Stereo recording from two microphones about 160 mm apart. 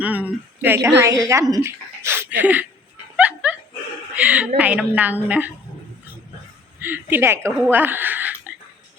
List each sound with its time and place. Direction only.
0.0 s a woman's voice: 10° right (ahead or behind)
3.2 s dog: 10° right (ahead or behind)
4.1 s a woman's voice: 10° right (ahead or behind)
6.8 s a woman's voice: 10° right (ahead or behind)